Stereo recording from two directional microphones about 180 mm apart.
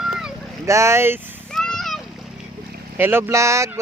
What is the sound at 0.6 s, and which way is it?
Speech, 15° right (ahead or behind).